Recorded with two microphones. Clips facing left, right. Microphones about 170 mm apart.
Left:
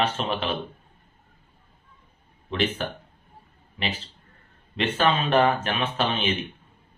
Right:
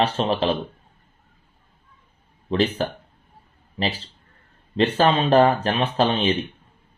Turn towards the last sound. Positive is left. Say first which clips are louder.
# right 5 dB
turn(degrees=-35)  # may be behind; listen again after turning